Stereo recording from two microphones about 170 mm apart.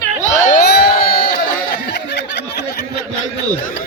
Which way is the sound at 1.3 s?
70° left (ahead or behind).